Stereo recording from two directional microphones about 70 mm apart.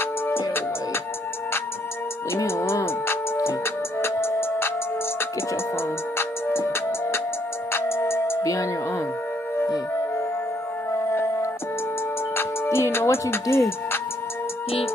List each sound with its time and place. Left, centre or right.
0.0 s music: left
2.3 s music: left
5.8 s music: left
12.4 s music: left